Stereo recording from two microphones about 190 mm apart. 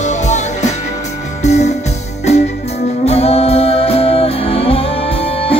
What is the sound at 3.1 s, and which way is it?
Music, 30° left (ahead or behind).